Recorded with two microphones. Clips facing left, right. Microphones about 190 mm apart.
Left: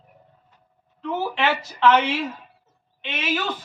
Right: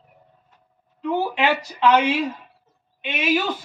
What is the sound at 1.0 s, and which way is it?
Speech, 15° right (ahead or behind).